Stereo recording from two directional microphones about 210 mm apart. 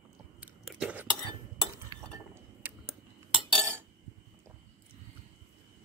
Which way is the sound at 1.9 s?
15° right (ahead or behind).